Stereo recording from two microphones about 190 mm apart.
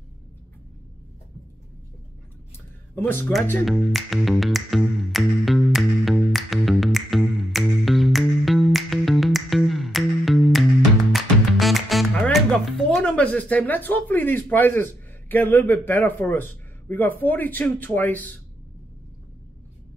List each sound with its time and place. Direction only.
3.0 s speech: 10° left (ahead or behind)
3.6 s music: centre (ahead or behind)
15.2 s a man's voice: 10° left (ahead or behind)